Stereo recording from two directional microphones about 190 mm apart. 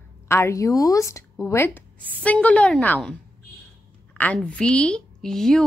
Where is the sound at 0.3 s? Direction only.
15° left (ahead or behind).